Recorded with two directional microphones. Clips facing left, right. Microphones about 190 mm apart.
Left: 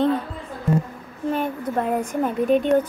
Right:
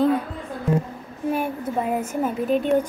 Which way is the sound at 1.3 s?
10° right (ahead or behind).